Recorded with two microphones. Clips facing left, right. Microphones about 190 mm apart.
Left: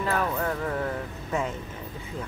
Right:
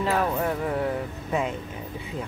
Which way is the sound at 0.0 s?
15° right (ahead or behind).